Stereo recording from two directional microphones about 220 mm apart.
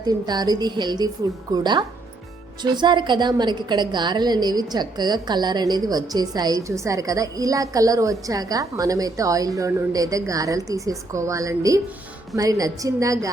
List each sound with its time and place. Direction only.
0.0 s a woman's voice: 20° right (ahead or behind)